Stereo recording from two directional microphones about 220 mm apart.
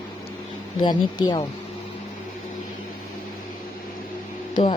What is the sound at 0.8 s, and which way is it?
Speech, 20° left (ahead or behind).